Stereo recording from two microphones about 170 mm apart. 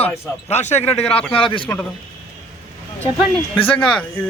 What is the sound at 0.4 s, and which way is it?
A man's voice, 40° left (ahead or behind).